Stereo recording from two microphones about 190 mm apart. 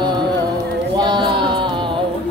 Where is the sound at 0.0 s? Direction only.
25° right (ahead or behind).